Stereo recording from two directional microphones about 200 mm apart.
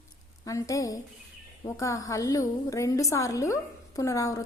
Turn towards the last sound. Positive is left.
turn(degrees=15)  # may be behind; listen again after turning